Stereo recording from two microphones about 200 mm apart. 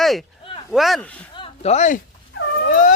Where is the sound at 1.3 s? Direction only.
30° left (ahead or behind).